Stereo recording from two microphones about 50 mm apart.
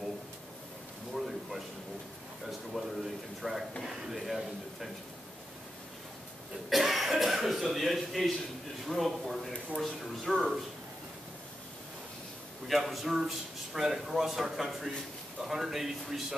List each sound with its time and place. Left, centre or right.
1.1 s a sound: centre
2.8 s speech: centre
6.7 s speech: centre
12.6 s speech: centre